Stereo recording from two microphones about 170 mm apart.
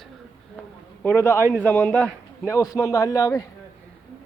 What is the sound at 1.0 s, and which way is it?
A man's voice, 10° left (ahead or behind).